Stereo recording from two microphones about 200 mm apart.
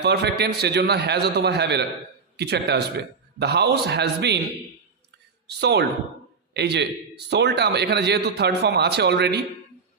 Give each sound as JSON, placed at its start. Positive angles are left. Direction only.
{"t": 0.0, "sound": "speech", "side_deg": -55}
{"t": 5.5, "sound": "a man's voice", "side_deg": -55}